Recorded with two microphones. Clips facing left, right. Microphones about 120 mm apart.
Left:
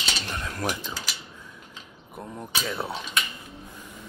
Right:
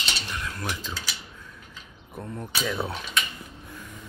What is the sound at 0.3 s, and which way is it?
Cutlery, 40° left (ahead or behind).